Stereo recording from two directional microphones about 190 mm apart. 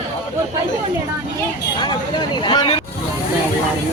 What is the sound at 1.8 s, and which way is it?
Speech, 25° left (ahead or behind).